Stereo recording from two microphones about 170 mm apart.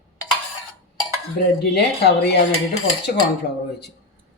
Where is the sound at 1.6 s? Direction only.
70° left (ahead or behind).